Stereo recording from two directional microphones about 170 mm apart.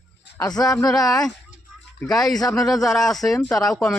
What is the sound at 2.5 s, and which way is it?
Speech, centre (ahead or behind).